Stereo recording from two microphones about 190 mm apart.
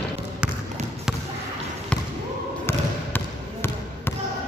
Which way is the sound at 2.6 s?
10° left (ahead or behind).